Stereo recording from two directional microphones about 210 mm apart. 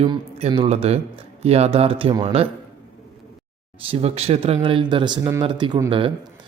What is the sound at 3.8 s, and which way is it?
Speech, 30° right (ahead or behind).